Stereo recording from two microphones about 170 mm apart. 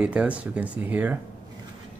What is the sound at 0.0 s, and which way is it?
Speech, 5° right (ahead or behind).